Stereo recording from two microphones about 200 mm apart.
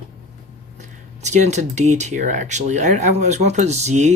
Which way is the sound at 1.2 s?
35° right (ahead or behind).